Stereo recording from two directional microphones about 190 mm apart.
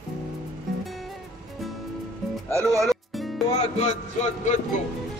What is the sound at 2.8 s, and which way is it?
Music, centre (ahead or behind).